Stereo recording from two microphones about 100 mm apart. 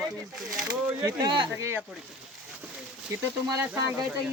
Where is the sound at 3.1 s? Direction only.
30° right (ahead or behind).